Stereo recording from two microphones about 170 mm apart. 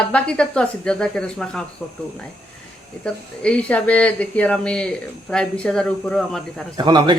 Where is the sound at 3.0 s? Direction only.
5° left (ahead or behind).